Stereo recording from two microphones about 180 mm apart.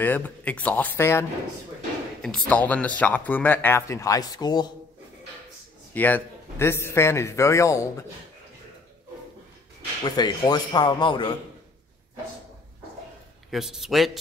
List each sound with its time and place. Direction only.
0.0 s speech: 10° left (ahead or behind)
2.2 s speech: 5° left (ahead or behind); by 4.6 s 25° left (ahead or behind)
5.9 s speech: 10° left (ahead or behind)
10.0 s speech: 25° left (ahead or behind)
13.5 s a man's voice: centre (ahead or behind)